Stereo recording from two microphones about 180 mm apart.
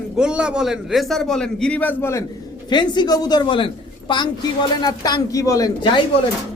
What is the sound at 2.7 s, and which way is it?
A woman's voice, 25° left (ahead or behind).